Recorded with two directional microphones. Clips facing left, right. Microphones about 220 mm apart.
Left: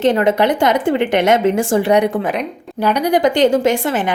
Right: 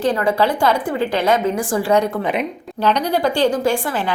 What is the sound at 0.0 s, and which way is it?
A woman's voice, 25° left (ahead or behind).